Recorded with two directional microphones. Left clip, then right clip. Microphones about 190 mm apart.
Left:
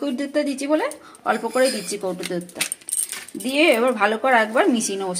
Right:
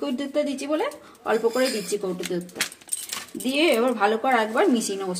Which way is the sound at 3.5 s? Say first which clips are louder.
Left 4 dB; 25° left (ahead or behind).